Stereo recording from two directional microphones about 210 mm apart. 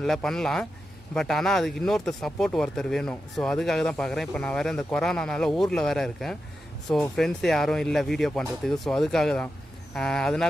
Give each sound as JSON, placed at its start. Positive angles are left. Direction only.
{"t": 0.0, "sound": "speech", "side_deg": 0}